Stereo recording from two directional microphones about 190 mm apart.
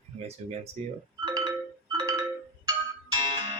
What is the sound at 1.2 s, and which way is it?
Music, 20° right (ahead or behind).